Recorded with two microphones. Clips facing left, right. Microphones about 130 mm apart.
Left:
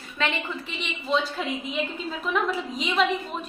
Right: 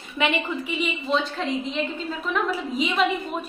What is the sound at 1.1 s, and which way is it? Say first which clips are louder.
A woman's voice: even; 5° left (ahead or behind).